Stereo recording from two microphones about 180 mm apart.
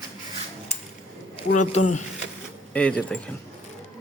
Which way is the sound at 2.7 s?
5° left (ahead or behind).